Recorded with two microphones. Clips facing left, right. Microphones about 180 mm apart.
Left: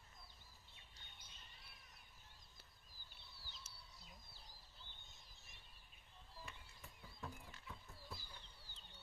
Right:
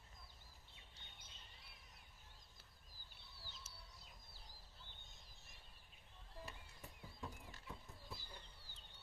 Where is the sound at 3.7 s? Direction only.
5° right (ahead or behind).